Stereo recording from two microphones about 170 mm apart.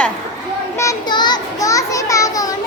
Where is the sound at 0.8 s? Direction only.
20° left (ahead or behind).